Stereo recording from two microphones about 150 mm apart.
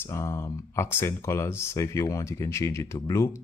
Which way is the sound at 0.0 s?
20° left (ahead or behind).